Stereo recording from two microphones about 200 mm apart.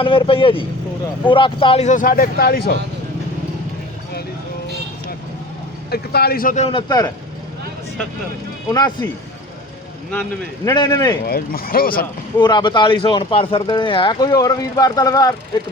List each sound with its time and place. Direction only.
0.0 s speech: 25° left (ahead or behind); by 2.7 s 50° left (ahead or behind)
5.9 s speech: 50° left (ahead or behind)
6.7 s speech: 20° left (ahead or behind)
8.7 s speech: 20° left (ahead or behind)
10.7 s speech: 20° left (ahead or behind)
11.3 s speech: 50° left (ahead or behind)
12.4 s speech: 20° left (ahead or behind)